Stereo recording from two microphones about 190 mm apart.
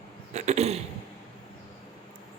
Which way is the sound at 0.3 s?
35° right (ahead or behind).